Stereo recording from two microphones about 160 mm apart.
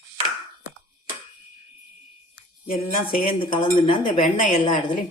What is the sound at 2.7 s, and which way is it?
Speech, 60° left (ahead or behind).